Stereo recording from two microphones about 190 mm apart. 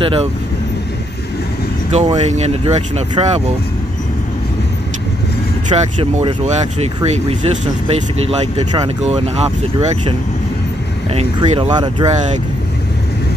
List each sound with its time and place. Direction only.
0.0 s speech: 25° right (ahead or behind)
1.9 s speech: 35° right (ahead or behind)
5.7 s speech: 30° right (ahead or behind)